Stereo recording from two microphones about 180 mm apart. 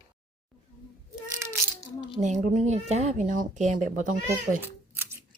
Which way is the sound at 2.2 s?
40° right (ahead or behind).